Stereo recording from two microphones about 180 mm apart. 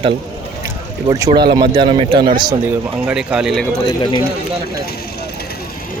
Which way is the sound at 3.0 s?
5° right (ahead or behind).